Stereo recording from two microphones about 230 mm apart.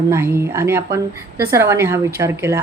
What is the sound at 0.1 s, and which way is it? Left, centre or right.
A woman's voice, centre.